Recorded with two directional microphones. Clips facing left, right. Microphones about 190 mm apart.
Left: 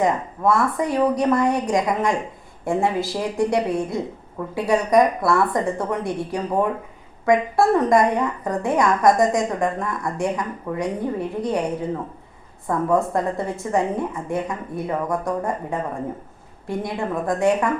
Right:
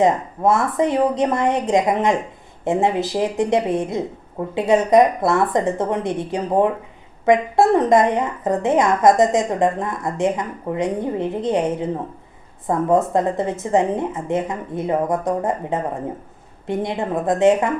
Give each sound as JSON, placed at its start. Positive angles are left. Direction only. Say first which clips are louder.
{"t": 0.0, "sound": "a woman's voice", "louder": "right 3 dB", "side_deg": -20}